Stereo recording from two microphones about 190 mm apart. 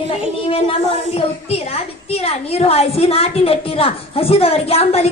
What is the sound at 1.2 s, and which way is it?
A child's voice, 30° left (ahead or behind).